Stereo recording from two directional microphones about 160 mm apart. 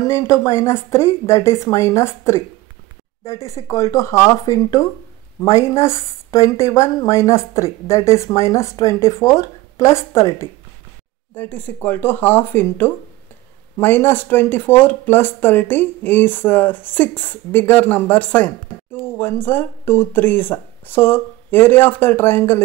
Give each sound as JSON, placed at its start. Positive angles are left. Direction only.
{"t": 0.1, "sound": "speech", "side_deg": 20}
{"t": 3.4, "sound": "a woman's voice", "side_deg": 20}